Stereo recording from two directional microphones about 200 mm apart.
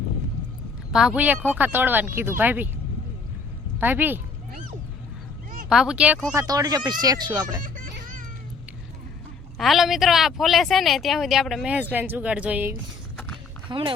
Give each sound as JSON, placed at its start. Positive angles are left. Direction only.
{"t": 0.9, "sound": "speech", "side_deg": -5}
{"t": 3.8, "sound": "speech", "side_deg": -10}
{"t": 5.6, "sound": "speech", "side_deg": -5}
{"t": 6.3, "sound": "speech", "side_deg": -15}
{"t": 7.6, "sound": "music", "side_deg": -40}
{"t": 9.6, "sound": "speech", "side_deg": 0}
{"t": 13.7, "sound": "speech", "side_deg": -25}